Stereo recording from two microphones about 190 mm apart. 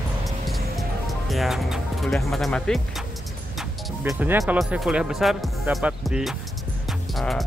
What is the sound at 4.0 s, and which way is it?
Speech, 10° right (ahead or behind).